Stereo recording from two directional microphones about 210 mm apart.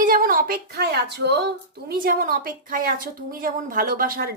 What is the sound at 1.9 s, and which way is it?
A woman's voice, 45° right (ahead or behind).